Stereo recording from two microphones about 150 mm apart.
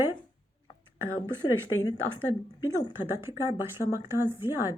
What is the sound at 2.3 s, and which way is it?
A woman's voice, 15° right (ahead or behind).